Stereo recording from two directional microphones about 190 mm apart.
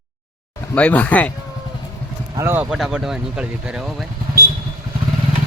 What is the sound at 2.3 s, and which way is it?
Speech, 15° right (ahead or behind).